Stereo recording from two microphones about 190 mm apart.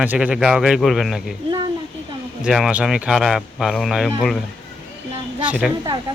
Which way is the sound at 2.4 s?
5° right (ahead or behind).